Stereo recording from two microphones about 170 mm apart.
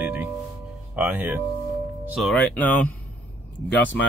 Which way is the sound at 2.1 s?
Centre (ahead or behind).